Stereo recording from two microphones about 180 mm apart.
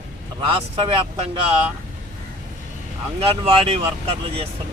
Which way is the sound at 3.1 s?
35° right (ahead or behind).